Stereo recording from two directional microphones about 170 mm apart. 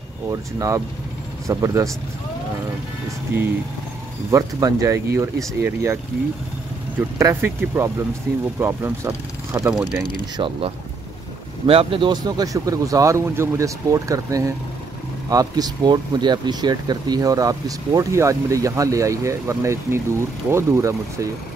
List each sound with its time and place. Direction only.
0.3 s speech: 20° right (ahead or behind)
4.3 s speech: 20° right (ahead or behind)
7.0 s speech: 15° right (ahead or behind)
9.6 s speech: 5° right (ahead or behind)
10.3 s speech: 30° right (ahead or behind)